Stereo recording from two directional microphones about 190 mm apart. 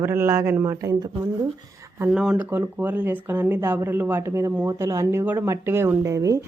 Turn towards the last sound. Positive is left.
turn(degrees=-15)  # may be behind; listen again after turning